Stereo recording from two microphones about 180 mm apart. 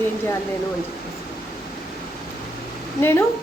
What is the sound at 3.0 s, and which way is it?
Speech, 10° left (ahead or behind).